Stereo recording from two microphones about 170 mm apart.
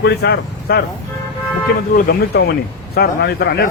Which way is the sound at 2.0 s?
65° left (ahead or behind).